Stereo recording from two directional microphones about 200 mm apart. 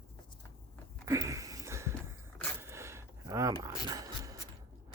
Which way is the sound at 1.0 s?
15° right (ahead or behind).